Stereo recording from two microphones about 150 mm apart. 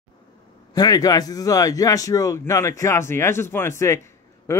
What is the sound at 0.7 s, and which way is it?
A man's voice, 25° left (ahead or behind).